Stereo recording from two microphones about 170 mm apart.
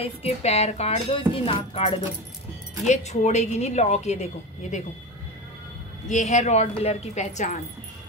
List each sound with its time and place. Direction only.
0.0 s a woman's voice: 35° left (ahead or behind)
6.0 s a woman's voice: 45° left (ahead or behind)